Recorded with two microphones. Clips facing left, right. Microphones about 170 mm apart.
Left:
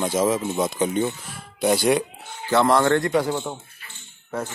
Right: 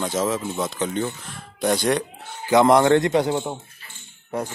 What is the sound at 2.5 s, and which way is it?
Speech, 20° right (ahead or behind).